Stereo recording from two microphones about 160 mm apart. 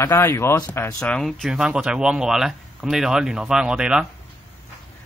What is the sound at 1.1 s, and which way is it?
Speech, 5° left (ahead or behind).